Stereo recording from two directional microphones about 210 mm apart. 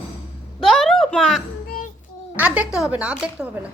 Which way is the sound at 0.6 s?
Centre (ahead or behind).